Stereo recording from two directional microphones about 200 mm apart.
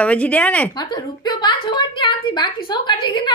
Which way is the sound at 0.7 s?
20° left (ahead or behind).